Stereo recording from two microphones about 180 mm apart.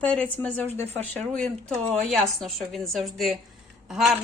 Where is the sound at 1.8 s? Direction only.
35° right (ahead or behind).